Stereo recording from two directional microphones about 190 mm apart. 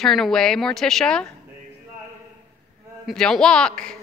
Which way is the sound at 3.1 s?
5° left (ahead or behind).